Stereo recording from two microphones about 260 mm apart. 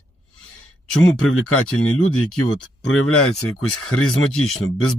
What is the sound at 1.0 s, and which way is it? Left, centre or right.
Speech, left.